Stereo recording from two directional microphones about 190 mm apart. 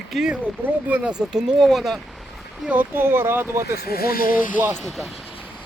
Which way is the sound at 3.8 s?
55° left (ahead or behind).